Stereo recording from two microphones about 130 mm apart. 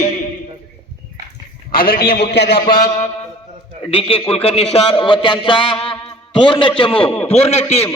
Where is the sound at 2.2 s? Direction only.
40° left (ahead or behind).